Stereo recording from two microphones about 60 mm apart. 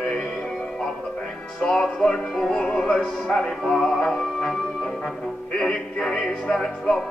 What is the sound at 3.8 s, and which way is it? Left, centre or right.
Music, centre.